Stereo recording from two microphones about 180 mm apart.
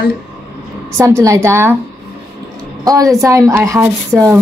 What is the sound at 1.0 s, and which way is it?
Speech, 15° right (ahead or behind).